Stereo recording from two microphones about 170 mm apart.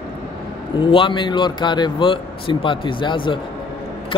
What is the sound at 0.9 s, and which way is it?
Speech, 30° left (ahead or behind).